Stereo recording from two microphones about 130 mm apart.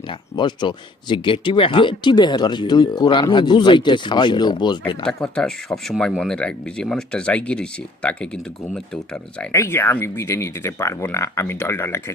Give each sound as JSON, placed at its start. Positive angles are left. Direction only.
{"t": 0.1, "sound": "speech", "side_deg": 35}
{"t": 5.0, "sound": "speech", "side_deg": 5}
{"t": 9.5, "sound": "speech", "side_deg": 20}